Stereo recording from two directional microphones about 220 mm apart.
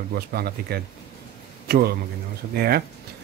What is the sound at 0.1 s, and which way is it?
Speech, 45° right (ahead or behind).